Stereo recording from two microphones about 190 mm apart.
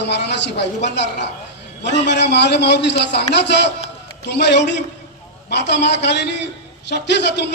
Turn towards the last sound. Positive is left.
turn(degrees=65)  # may be behind; listen again after turning